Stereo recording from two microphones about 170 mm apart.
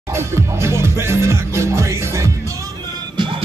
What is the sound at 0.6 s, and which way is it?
Music, 15° right (ahead or behind).